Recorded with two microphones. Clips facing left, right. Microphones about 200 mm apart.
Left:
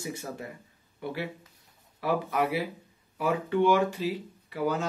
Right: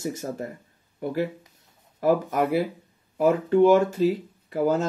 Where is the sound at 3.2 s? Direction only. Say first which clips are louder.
Right 7 dB; 40° right (ahead or behind).